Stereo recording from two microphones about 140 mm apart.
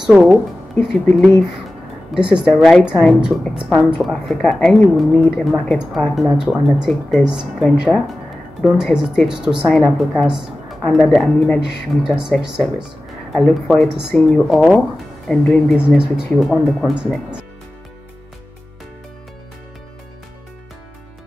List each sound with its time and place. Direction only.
0.0 s a woman's voice: 5° right (ahead or behind)
2.1 s a woman's voice: 5° right (ahead or behind)